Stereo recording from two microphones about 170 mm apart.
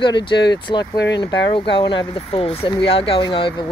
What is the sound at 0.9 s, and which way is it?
Speech, 90° left.